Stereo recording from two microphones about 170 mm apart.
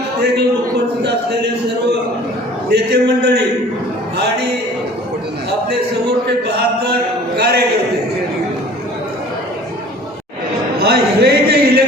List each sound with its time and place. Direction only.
1.0 s speech: 75° right (ahead or behind)
2.6 s speech: 75° right (ahead or behind)
10.8 s a sound: 70° right (ahead or behind)